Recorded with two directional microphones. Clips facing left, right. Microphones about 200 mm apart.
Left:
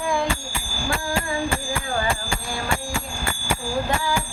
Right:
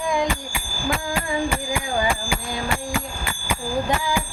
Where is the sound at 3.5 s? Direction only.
15° right (ahead or behind).